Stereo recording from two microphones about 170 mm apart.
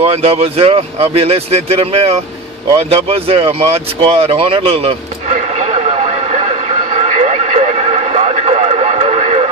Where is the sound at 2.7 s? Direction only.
35° right (ahead or behind).